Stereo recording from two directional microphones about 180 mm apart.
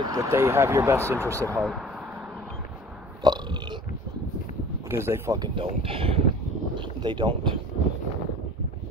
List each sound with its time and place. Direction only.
0.0 s speech: 20° right (ahead or behind)
3.2 s burping: 25° right (ahead or behind)
4.8 s speech: 15° right (ahead or behind)
5.6 s speech: 30° right (ahead or behind)
6.7 s boat: 25° right (ahead or behind)